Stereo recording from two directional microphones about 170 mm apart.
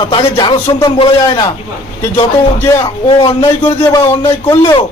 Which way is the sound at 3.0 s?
25° left (ahead or behind).